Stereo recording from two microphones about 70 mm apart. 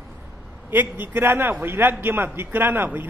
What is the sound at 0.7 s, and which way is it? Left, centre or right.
A man's voice, right.